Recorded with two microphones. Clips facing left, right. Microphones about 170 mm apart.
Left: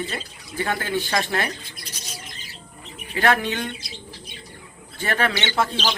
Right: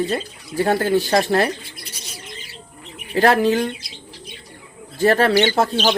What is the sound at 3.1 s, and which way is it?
Speech, 35° right (ahead or behind).